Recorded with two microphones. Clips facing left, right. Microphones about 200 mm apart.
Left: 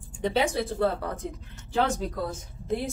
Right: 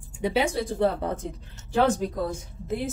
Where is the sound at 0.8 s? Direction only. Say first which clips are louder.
Right 3 dB; 25° right (ahead or behind).